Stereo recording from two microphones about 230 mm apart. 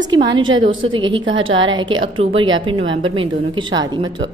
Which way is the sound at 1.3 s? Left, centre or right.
Right.